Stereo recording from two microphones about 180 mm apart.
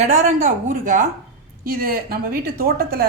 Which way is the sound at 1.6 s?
55° right (ahead or behind).